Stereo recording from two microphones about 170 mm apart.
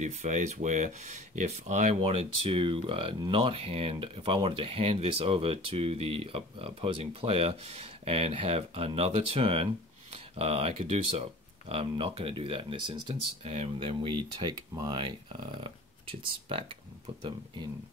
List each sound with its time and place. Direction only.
0.0 s speech: 45° right (ahead or behind)
2.0 s speech: 35° right (ahead or behind)